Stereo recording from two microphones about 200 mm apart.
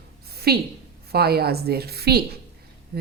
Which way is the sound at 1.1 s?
50° right (ahead or behind).